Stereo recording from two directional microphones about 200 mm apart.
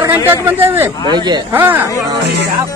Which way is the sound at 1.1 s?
20° right (ahead or behind).